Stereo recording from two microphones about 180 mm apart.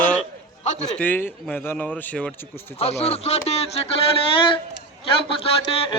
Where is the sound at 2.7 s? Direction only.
35° left (ahead or behind).